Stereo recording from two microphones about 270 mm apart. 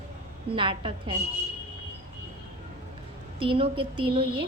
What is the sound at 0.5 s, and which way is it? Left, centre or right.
Speech, centre.